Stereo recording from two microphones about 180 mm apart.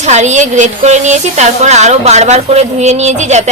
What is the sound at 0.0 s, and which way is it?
Speech, 40° right (ahead or behind).